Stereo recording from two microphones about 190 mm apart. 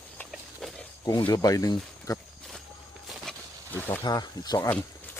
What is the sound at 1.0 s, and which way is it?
Speech, 20° left (ahead or behind).